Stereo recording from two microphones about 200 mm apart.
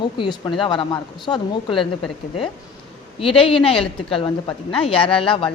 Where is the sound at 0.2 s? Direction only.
20° left (ahead or behind).